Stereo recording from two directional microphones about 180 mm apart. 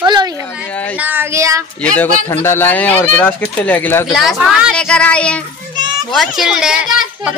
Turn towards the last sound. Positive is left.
turn(degrees=-5)  # may be behind; listen again after turning